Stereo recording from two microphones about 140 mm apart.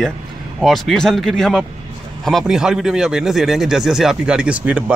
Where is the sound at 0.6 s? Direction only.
Centre (ahead or behind).